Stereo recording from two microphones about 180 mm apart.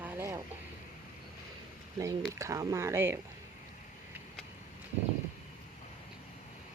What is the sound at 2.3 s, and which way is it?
Speech, 15° right (ahead or behind).